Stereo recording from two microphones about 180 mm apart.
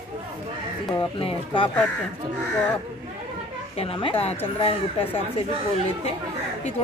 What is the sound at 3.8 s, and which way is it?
Speech, 30° left (ahead or behind).